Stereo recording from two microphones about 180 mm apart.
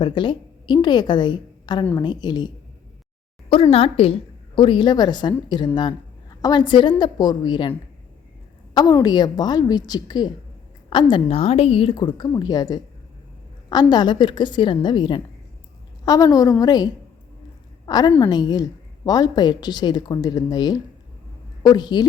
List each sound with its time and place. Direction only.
0.0 s a woman's voice: 25° left (ahead or behind)
3.5 s a woman's voice: 30° left (ahead or behind)
8.7 s a woman's voice: 20° left (ahead or behind)